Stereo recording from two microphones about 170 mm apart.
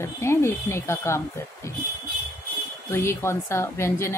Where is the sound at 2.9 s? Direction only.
15° left (ahead or behind).